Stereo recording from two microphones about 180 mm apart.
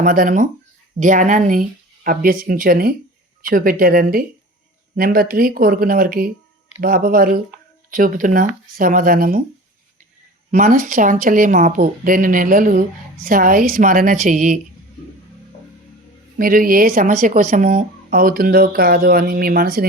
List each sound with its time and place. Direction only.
0.0 s speech: 50° right (ahead or behind)
10.5 s speech: 45° right (ahead or behind)
16.4 s speech: 50° right (ahead or behind)